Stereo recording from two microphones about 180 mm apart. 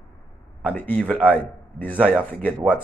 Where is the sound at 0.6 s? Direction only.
10° left (ahead or behind).